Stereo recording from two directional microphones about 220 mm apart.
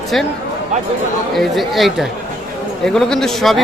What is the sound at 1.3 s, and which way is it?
Speech, centre (ahead or behind).